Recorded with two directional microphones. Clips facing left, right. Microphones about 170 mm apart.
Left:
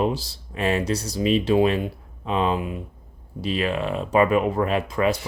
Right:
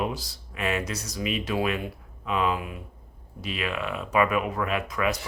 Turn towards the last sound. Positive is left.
turn(degrees=30)  # may be behind; listen again after turning